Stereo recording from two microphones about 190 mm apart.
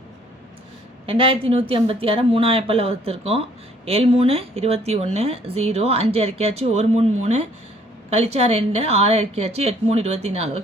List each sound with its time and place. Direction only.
1.0 s speech: 30° right (ahead or behind)